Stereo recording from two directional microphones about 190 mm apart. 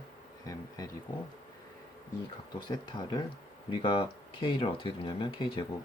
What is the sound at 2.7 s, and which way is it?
Speech, 25° left (ahead or behind).